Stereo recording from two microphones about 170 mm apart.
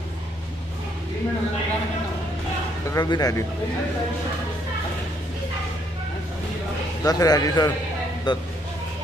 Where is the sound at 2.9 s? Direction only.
25° left (ahead or behind).